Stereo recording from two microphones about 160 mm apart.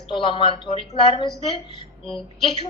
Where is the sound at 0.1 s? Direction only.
30° left (ahead or behind).